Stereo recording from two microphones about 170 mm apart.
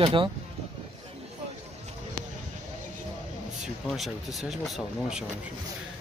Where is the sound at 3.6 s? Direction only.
Centre (ahead or behind).